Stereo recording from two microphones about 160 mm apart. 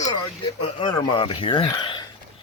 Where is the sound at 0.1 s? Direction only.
35° left (ahead or behind).